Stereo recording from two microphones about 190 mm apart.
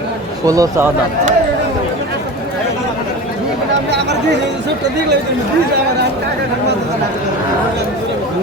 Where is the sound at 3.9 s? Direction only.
65° right (ahead or behind).